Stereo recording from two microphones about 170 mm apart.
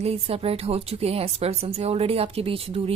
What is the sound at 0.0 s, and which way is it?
A woman's voice, 35° right (ahead or behind).